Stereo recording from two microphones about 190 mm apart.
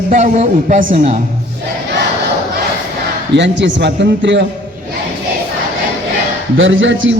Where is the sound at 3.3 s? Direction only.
70° right (ahead or behind).